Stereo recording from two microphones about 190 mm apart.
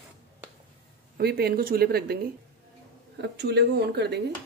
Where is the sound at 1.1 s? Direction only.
55° right (ahead or behind).